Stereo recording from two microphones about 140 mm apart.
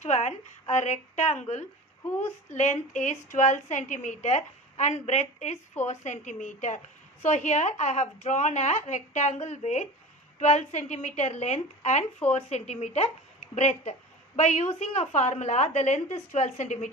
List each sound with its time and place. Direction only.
0.0 s a woman's voice: 55° left (ahead or behind)